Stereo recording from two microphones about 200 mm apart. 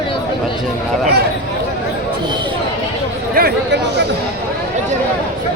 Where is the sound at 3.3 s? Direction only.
55° right (ahead or behind).